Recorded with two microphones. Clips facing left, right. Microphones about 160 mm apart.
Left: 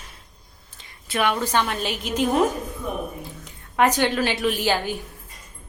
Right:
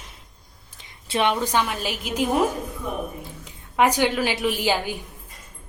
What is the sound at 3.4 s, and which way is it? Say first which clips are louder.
A woman's voice: even; 10° right (ahead or behind).